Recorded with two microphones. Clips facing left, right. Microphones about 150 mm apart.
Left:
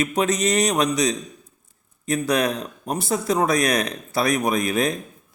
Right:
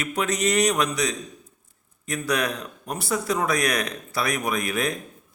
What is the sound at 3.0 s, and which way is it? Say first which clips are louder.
Speech: left 2 dB; 25° left (ahead or behind).